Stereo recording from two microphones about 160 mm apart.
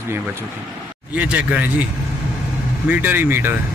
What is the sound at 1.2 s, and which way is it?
Speech, 10° right (ahead or behind).